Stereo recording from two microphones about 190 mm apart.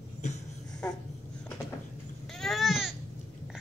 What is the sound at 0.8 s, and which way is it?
Babbling, 5° left (ahead or behind).